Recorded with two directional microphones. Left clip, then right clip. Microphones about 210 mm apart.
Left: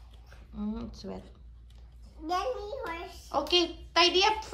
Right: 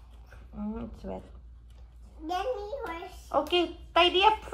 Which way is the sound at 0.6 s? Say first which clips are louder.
Even; 10° left (ahead or behind).